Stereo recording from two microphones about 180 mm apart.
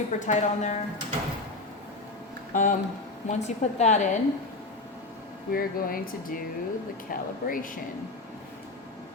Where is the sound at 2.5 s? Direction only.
45° left (ahead or behind).